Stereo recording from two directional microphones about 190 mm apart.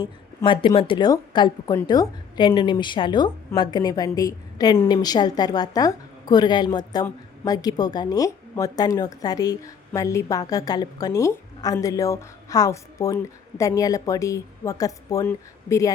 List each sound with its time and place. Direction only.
0.0 s a woman's voice: 25° left (ahead or behind)